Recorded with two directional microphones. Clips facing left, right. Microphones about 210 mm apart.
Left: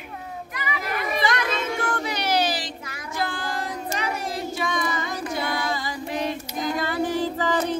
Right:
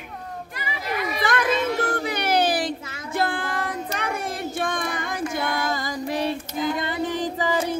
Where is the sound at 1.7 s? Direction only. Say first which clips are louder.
Right 3 dB; 35° right (ahead or behind).